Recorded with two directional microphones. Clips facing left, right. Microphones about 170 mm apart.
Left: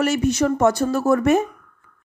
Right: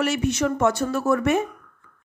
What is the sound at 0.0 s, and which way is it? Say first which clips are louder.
Speech: left 3 dB; 40° left (ahead or behind).